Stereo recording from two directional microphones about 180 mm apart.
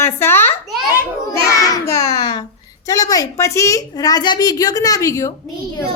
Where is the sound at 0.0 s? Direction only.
15° left (ahead or behind).